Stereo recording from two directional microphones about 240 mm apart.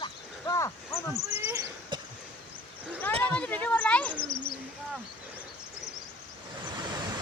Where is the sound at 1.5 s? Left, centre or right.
Centre.